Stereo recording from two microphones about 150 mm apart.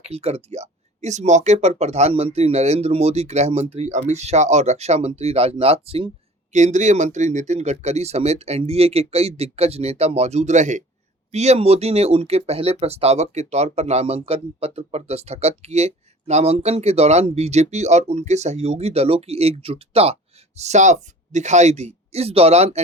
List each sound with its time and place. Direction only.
0.1 s speech: 45° right (ahead or behind)
6.5 s speech: 50° right (ahead or behind)